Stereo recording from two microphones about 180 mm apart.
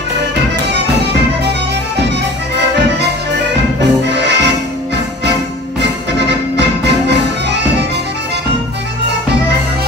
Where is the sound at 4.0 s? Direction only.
70° right (ahead or behind).